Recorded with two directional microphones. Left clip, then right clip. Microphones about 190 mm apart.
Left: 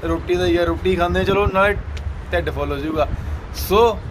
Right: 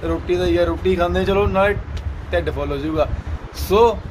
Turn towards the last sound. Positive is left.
turn(degrees=10)  # may be behind; listen again after turning